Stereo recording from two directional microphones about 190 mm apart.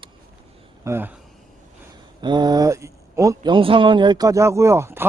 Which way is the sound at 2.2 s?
25° right (ahead or behind).